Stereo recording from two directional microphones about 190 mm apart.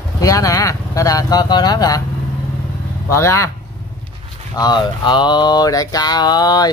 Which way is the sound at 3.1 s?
15° left (ahead or behind).